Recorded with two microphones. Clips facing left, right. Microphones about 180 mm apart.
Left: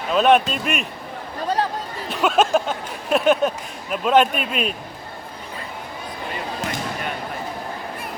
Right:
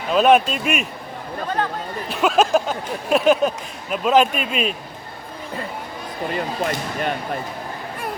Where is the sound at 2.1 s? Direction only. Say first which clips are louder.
Right 1 dB; centre (ahead or behind).